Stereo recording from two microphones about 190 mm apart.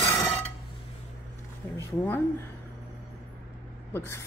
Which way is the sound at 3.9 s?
10° left (ahead or behind).